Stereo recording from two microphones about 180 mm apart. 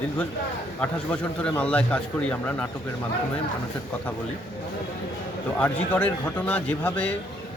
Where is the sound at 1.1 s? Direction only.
10° left (ahead or behind).